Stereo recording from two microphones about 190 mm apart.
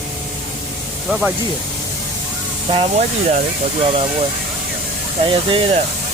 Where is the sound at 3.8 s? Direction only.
30° right (ahead or behind).